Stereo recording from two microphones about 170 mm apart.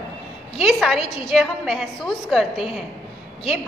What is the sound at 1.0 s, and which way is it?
Speech, 35° left (ahead or behind).